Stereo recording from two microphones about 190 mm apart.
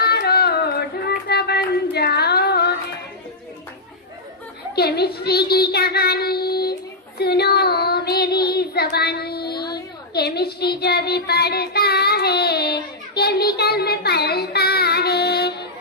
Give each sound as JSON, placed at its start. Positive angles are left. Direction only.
{"t": 0.0, "sound": "child singing", "side_deg": 55}
{"t": 4.7, "sound": "a child's voice", "side_deg": 55}
{"t": 7.2, "sound": "child singing", "side_deg": 55}